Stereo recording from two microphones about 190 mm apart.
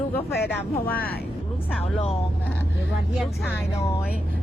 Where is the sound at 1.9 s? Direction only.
30° left (ahead or behind).